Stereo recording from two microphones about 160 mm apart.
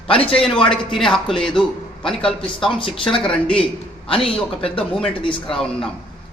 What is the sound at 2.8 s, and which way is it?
Speech, 35° left (ahead or behind).